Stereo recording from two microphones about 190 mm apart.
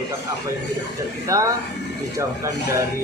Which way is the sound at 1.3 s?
15° right (ahead or behind).